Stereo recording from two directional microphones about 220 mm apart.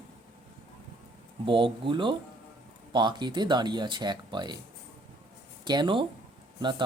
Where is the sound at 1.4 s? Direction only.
25° right (ahead or behind).